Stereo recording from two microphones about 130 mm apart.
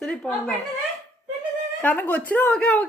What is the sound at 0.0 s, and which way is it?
Speech, 5° left (ahead or behind).